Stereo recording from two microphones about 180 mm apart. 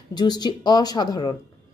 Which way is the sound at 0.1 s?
25° left (ahead or behind).